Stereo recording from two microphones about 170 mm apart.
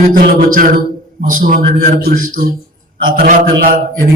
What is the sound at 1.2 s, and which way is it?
Music, 50° right (ahead or behind).